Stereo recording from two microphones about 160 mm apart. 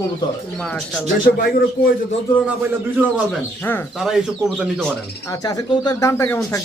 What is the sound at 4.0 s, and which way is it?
Speech, 5° right (ahead or behind).